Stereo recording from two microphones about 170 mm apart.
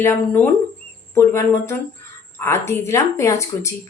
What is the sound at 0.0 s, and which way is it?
A woman's voice, 10° left (ahead or behind).